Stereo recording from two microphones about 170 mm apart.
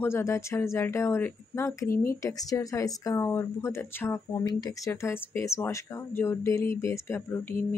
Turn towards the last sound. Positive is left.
turn(degrees=15)  # may be behind; listen again after turning